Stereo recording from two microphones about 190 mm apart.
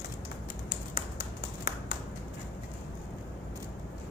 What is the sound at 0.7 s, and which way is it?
Tap, 45° left (ahead or behind).